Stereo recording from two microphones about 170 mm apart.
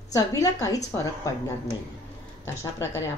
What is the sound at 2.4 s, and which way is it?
Speech, 15° left (ahead or behind).